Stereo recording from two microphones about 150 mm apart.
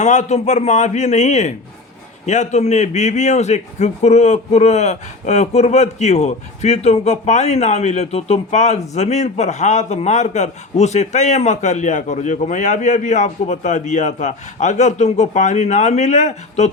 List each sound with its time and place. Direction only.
0.0 s a man's voice: 50° left (ahead or behind)